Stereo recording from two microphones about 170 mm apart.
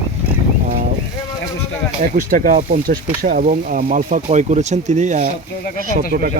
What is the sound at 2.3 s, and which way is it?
Speech, 55° right (ahead or behind).